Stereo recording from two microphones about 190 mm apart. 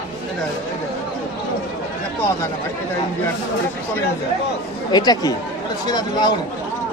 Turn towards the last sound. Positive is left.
turn(degrees=20)  # may be behind; listen again after turning